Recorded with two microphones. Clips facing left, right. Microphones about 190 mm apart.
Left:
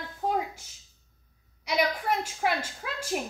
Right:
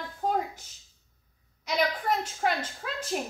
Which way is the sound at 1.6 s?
5° left (ahead or behind).